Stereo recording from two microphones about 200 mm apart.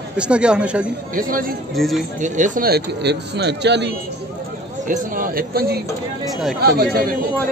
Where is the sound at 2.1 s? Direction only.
40° right (ahead or behind); by 3.9 s 60° right (ahead or behind).